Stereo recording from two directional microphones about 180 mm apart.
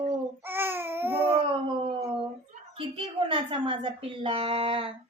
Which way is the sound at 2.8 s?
30° right (ahead or behind).